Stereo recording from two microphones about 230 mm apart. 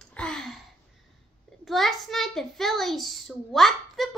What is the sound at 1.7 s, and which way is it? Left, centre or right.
A child's voice, centre.